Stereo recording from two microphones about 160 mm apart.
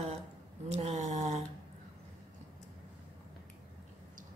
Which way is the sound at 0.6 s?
40° right (ahead or behind).